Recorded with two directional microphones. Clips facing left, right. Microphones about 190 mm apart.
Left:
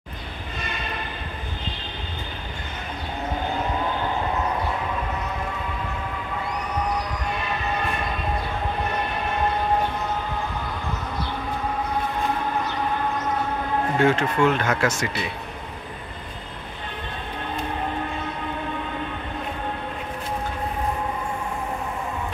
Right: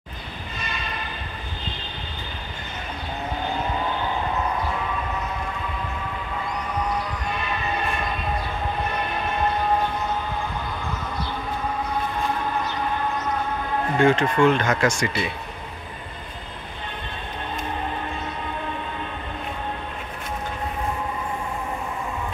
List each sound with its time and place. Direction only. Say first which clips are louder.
13.9 s speech: right 2 dB; 5° left (ahead or behind)